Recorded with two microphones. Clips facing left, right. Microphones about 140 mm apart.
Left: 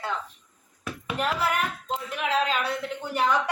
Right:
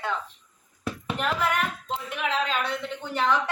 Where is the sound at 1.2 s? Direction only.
5° left (ahead or behind).